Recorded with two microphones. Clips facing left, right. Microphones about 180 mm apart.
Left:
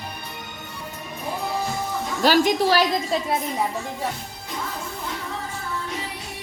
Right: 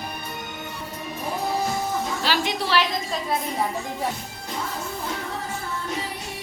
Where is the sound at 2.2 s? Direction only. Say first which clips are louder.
Left 11 dB; 45° left (ahead or behind).